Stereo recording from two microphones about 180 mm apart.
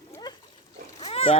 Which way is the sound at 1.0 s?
35° left (ahead or behind).